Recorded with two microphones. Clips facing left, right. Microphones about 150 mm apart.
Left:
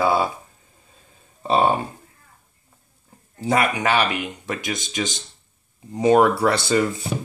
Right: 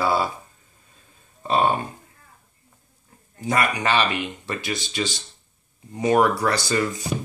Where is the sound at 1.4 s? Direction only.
25° left (ahead or behind).